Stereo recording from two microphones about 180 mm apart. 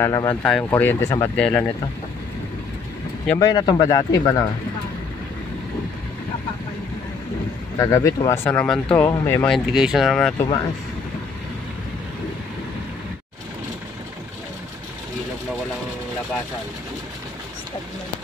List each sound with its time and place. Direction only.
0.0 s speech: 20° left (ahead or behind)
0.4 s speech: 5° left (ahead or behind)
3.3 s speech: 20° left (ahead or behind)
7.8 s speech: 20° left (ahead or behind)
8.5 s speech: 5° left (ahead or behind)
9.5 s speech: 5° right (ahead or behind)